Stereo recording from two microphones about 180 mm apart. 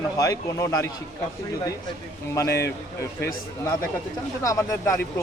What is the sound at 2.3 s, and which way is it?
Speech, 15° left (ahead or behind).